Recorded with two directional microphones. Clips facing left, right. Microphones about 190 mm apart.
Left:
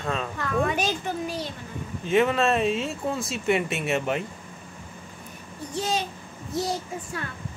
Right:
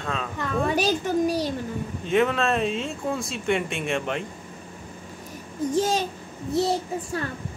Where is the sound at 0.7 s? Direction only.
35° right (ahead or behind).